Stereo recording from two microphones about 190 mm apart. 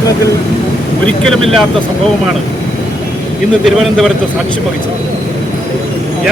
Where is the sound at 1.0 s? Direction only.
5° left (ahead or behind).